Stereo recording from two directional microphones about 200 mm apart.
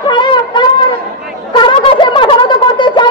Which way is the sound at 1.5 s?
25° left (ahead or behind).